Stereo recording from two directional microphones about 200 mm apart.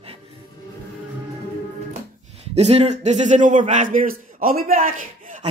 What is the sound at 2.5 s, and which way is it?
A man's voice, 30° right (ahead or behind).